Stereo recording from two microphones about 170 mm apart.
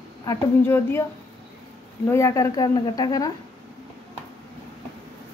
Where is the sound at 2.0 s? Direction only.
15° left (ahead or behind).